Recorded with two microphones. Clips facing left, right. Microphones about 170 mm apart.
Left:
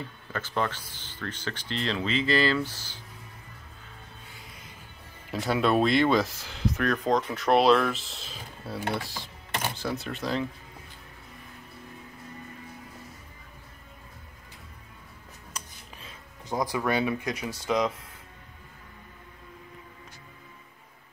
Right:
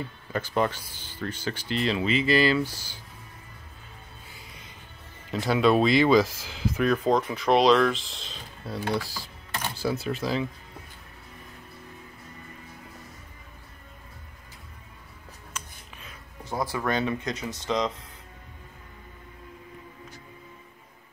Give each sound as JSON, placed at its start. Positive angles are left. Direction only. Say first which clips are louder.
{"t": 0.3, "sound": "speech", "louder": "right 4 dB", "side_deg": -15}
{"t": 5.3, "sound": "speech", "louder": "right 3 dB", "side_deg": 0}
{"t": 8.9, "sound": "speech", "louder": "right 3 dB", "side_deg": 25}
{"t": 9.8, "sound": "speech", "louder": "right 4 dB", "side_deg": -5}
{"t": 15.5, "sound": "a sound", "louder": "right 1 dB", "side_deg": 30}
{"t": 16.4, "sound": "speech", "louder": "left 1 dB", "side_deg": 15}